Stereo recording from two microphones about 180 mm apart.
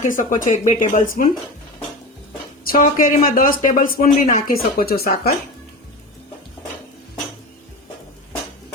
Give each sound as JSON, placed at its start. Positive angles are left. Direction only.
{"t": 0.0, "sound": "speech", "side_deg": 45}
{"t": 2.6, "sound": "speech", "side_deg": 50}
{"t": 4.3, "sound": "speech", "side_deg": 40}
{"t": 4.8, "sound": "speech", "side_deg": 55}